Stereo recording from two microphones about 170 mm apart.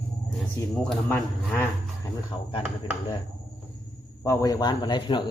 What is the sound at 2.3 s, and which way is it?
Speech, 25° left (ahead or behind).